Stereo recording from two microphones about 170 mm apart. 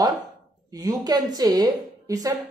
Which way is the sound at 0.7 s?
20° right (ahead or behind).